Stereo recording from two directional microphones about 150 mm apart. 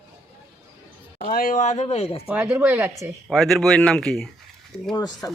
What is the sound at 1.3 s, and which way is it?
Speech, 70° left (ahead or behind).